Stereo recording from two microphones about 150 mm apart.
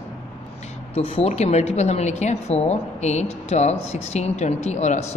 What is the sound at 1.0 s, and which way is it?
A woman's voice, 40° left (ahead or behind).